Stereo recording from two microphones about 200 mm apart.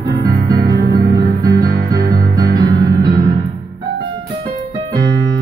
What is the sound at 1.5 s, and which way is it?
Music, 20° right (ahead or behind).